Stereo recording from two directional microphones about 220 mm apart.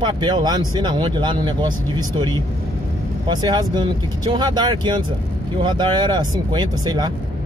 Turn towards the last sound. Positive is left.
turn(degrees=-20)  # may be behind; listen again after turning